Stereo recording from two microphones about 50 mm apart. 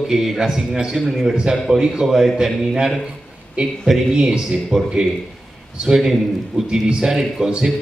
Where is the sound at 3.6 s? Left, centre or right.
Centre.